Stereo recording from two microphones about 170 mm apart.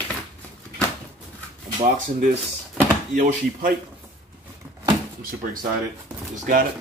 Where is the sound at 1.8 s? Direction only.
50° right (ahead or behind).